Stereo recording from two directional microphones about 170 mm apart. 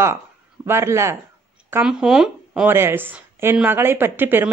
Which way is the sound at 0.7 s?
15° right (ahead or behind).